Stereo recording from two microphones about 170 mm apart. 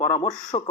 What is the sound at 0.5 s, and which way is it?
Speech, 30° left (ahead or behind).